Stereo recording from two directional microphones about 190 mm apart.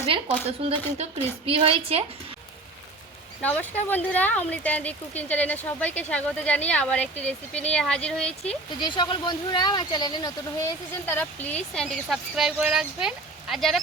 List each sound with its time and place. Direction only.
1.5 s a woman's voice: 30° right (ahead or behind)
3.4 s speech: 10° left (ahead or behind)
8.8 s speech: 25° left (ahead or behind); by 13.7 s centre (ahead or behind)